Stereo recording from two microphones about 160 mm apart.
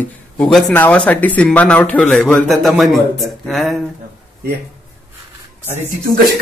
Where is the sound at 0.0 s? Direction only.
10° left (ahead or behind).